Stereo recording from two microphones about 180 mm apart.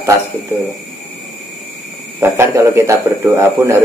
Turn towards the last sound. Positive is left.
turn(degrees=-15)  # may be behind; listen again after turning